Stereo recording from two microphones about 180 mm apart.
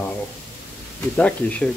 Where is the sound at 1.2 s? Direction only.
5° left (ahead or behind).